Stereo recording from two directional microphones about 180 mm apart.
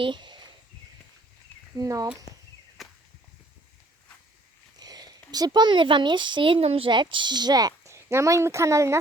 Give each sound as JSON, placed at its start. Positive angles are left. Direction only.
{"t": 0.0, "sound": "a sound", "side_deg": -25}
{"t": 1.7, "sound": "speech", "side_deg": -20}
{"t": 2.8, "sound": "whip", "side_deg": 0}
{"t": 4.8, "sound": "speech", "side_deg": -20}